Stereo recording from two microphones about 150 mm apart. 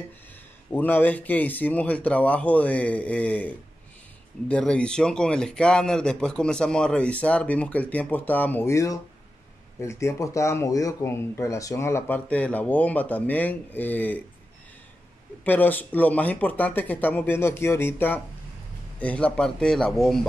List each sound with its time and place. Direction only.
0.7 s speech: 10° left (ahead or behind)
15.4 s a man's voice: 10° left (ahead or behind)